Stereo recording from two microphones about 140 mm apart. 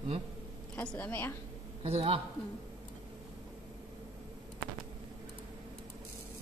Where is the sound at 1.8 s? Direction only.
45° right (ahead or behind).